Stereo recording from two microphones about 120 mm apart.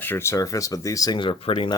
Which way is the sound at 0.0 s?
20° left (ahead or behind).